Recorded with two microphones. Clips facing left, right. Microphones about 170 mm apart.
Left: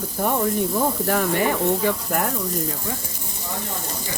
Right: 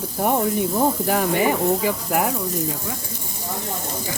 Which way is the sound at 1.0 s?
10° right (ahead or behind).